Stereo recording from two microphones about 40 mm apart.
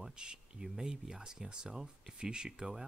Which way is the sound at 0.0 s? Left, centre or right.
Right.